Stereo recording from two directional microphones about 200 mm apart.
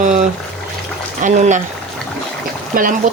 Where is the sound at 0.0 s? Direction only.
40° right (ahead or behind).